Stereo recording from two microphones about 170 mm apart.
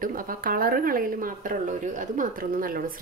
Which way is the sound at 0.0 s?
55° right (ahead or behind).